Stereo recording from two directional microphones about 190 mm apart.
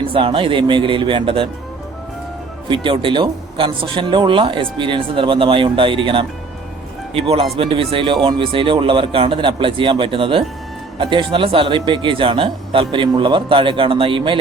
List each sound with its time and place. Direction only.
0.0 s speech: 30° right (ahead or behind)
2.6 s speech: 25° right (ahead or behind)